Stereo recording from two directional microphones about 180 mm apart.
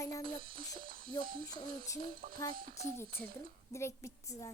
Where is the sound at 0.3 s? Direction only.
50° right (ahead or behind).